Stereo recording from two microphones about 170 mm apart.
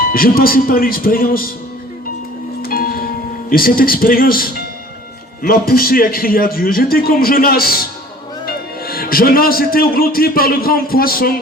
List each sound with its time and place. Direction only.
0.0 s a man's voice: 60° left (ahead or behind)
2.6 s a sound: 60° left (ahead or behind)
3.5 s a man's voice: 60° left (ahead or behind)